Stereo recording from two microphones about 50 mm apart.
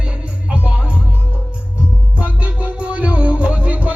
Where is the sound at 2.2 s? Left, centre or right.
Right.